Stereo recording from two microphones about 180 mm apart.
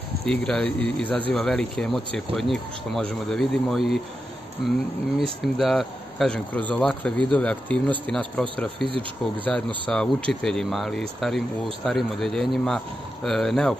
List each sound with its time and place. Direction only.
0.2 s speech: 5° left (ahead or behind)
5.2 s speech: centre (ahead or behind)